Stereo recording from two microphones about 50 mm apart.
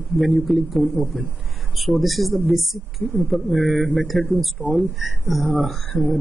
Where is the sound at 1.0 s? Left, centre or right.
Right.